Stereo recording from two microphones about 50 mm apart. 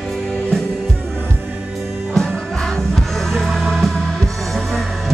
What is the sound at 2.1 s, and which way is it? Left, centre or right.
Music, centre.